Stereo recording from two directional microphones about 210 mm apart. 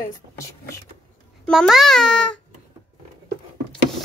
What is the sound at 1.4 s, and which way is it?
Speech, centre (ahead or behind).